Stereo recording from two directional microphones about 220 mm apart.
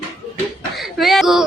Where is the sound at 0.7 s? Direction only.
Centre (ahead or behind).